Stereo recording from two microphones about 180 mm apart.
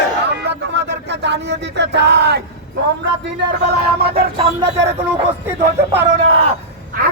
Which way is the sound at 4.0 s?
60° right (ahead or behind).